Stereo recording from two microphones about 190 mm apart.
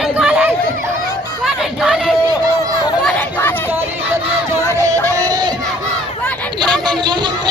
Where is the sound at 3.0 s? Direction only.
10° left (ahead or behind).